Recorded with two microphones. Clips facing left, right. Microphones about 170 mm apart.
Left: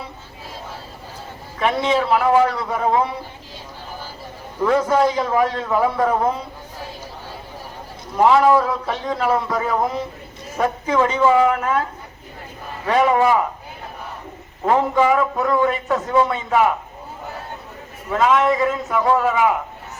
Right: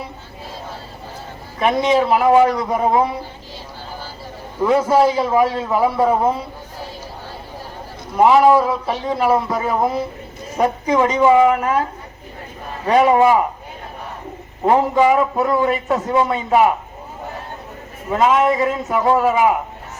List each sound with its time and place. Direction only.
1.6 s a man's voice: 10° right (ahead or behind)
4.6 s a man's voice: 10° right (ahead or behind)
8.1 s a man's voice: 15° right (ahead or behind)
13.0 s a man's voice: 15° right (ahead or behind)
14.6 s a man's voice: 20° right (ahead or behind)
18.1 s a man's voice: 20° right (ahead or behind)